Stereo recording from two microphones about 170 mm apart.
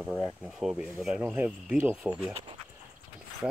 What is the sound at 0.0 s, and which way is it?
Speech, 5° right (ahead or behind).